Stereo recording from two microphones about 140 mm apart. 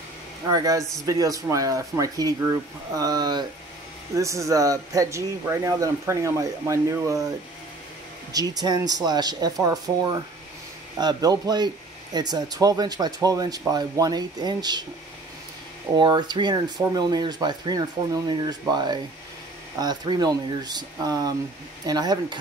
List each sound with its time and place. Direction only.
0.5 s speech: 25° right (ahead or behind)
8.3 s speech: 30° right (ahead or behind)
16.0 s speech: 30° right (ahead or behind)